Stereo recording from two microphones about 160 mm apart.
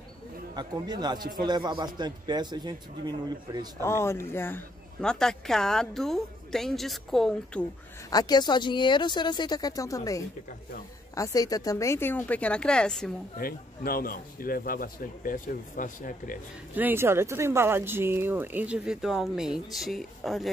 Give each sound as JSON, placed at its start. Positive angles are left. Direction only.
{"t": 0.6, "sound": "a man's voice", "side_deg": -25}
{"t": 3.8, "sound": "a woman's voice", "side_deg": 15}
{"t": 8.1, "sound": "a woman's voice", "side_deg": 25}
{"t": 13.4, "sound": "a man's voice", "side_deg": 65}
{"t": 16.7, "sound": "speech", "side_deg": -15}